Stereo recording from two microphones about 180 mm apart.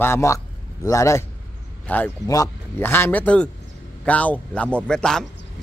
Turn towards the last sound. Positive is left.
turn(degrees=5)  # may be behind; listen again after turning